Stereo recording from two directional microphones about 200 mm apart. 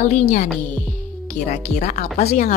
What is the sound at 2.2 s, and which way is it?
Speech, 50° left (ahead or behind).